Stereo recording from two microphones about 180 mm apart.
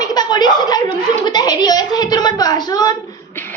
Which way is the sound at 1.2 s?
25° left (ahead or behind).